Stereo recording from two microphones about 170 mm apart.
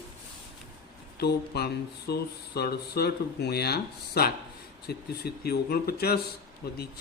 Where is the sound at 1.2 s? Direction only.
70° left (ahead or behind).